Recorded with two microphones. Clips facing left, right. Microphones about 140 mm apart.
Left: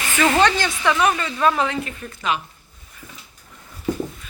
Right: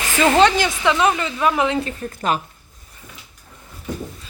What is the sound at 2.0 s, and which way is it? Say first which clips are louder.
Speech: right 1 dB; 45° right (ahead or behind).